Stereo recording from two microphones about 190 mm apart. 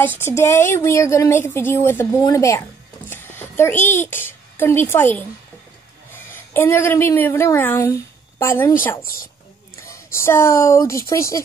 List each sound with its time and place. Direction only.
0.2 s a woman's voice: 15° left (ahead or behind)
3.1 s a sound: 10° left (ahead or behind)
3.8 s a woman's voice: 10° left (ahead or behind)
9.0 s a woman's voice: 50° left (ahead or behind)
9.8 s a woman's voice: 15° left (ahead or behind)